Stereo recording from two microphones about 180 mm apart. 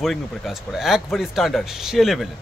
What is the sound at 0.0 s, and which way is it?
Speech, centre (ahead or behind).